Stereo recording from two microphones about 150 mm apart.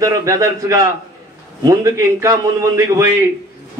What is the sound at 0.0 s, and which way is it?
A man's voice, 20° right (ahead or behind).